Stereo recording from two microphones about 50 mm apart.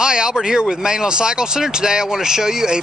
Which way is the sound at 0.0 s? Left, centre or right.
Centre.